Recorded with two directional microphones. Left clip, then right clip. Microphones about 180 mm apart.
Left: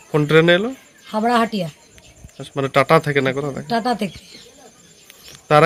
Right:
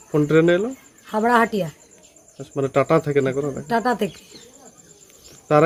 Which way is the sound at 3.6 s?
40° right (ahead or behind).